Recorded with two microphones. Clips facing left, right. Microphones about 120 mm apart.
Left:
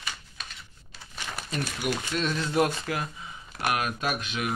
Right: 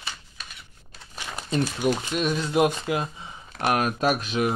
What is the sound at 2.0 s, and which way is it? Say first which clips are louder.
Speech: right 3 dB; 15° right (ahead or behind).